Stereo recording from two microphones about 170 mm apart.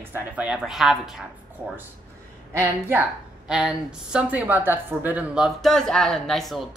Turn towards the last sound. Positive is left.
turn(degrees=0)  # may be behind; listen again after turning